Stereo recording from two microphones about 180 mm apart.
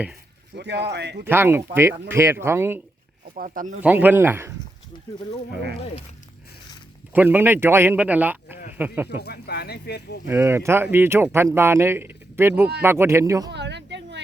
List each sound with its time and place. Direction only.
0.5 s speech: 70° right (ahead or behind)
1.2 s speech: 10° right (ahead or behind)
3.3 s speech: 50° right (ahead or behind)
3.8 s speech: 10° right (ahead or behind)
7.1 s speech: 10° right (ahead or behind)
9.2 s speech: 65° left (ahead or behind)
10.2 s speech: 15° right (ahead or behind)
13.5 s a sound: 75° right (ahead or behind)